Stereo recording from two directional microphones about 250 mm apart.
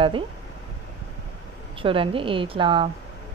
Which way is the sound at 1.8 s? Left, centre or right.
Right.